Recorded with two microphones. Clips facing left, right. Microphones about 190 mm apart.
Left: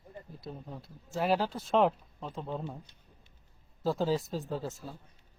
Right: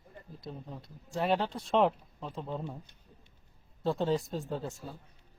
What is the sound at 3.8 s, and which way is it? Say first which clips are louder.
Speech: even; centre (ahead or behind).